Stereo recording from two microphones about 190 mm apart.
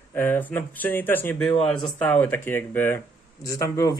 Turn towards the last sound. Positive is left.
turn(degrees=15)  # may be behind; listen again after turning